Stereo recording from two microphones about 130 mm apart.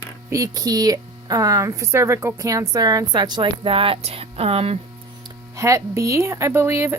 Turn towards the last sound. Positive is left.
turn(degrees=-20)  # may be behind; listen again after turning